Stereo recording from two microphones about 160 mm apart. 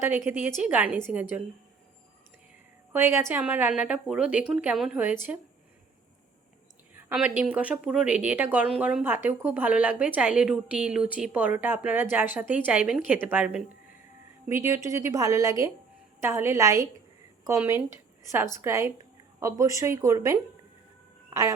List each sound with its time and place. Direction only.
0.0 s a woman's voice: 10° right (ahead or behind)
2.9 s a woman's voice: 15° right (ahead or behind)
7.1 s a woman's voice: 5° right (ahead or behind)